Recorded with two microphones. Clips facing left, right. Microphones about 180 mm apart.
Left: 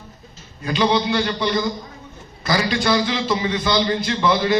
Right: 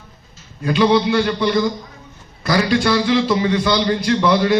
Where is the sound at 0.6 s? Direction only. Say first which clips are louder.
Right 4 dB; centre (ahead or behind).